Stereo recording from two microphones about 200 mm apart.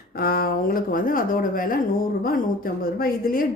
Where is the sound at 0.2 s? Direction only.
50° left (ahead or behind).